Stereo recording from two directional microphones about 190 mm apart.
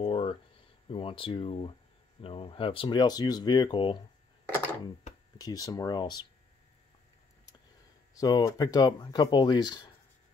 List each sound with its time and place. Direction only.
0.0 s a sound: 30° left (ahead or behind)
0.8 s speech: 30° left (ahead or behind)
5.4 s speech: 20° left (ahead or behind)
8.1 s speech: 20° left (ahead or behind)